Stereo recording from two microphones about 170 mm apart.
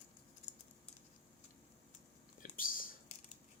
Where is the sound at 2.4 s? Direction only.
55° left (ahead or behind).